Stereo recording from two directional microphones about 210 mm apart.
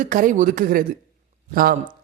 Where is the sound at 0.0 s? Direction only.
40° right (ahead or behind).